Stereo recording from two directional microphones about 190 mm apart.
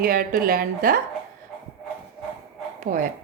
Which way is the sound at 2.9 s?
45° right (ahead or behind).